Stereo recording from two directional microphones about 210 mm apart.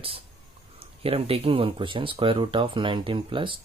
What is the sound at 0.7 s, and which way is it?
Speech, 25° right (ahead or behind).